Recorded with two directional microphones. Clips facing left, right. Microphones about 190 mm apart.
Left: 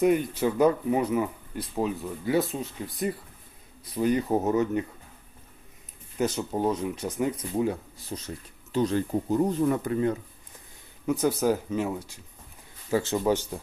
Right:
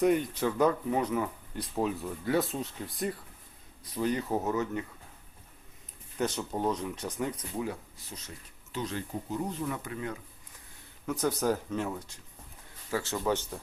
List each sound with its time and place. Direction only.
0.0 s speech: 5° left (ahead or behind)
3.9 s speech: 15° left (ahead or behind)
6.1 s speech: 5° left (ahead or behind)
7.5 s speech: 25° left (ahead or behind)
11.0 s speech: 10° left (ahead or behind)
12.9 s speech: 20° left (ahead or behind)